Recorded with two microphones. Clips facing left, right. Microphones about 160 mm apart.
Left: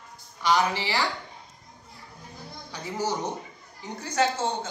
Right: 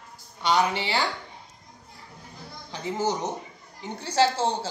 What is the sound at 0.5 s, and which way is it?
Speech, 25° right (ahead or behind).